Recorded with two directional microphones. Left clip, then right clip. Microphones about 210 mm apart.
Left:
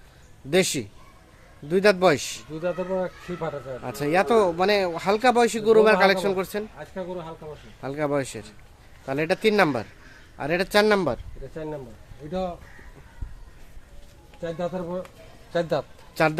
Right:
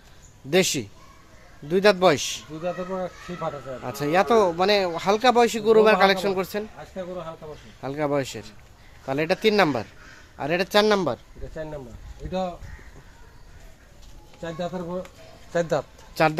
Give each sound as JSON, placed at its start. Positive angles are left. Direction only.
{"t": 0.5, "sound": "speech", "side_deg": -5}
{"t": 2.6, "sound": "speech", "side_deg": 45}
{"t": 3.8, "sound": "speech", "side_deg": -5}
{"t": 7.8, "sound": "speech", "side_deg": -5}
{"t": 14.6, "sound": "speech", "side_deg": 5}
{"t": 15.5, "sound": "speech", "side_deg": -15}
{"t": 16.1, "sound": "speech", "side_deg": -5}